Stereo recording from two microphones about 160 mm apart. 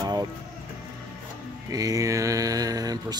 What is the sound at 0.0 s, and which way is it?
Music, 25° right (ahead or behind).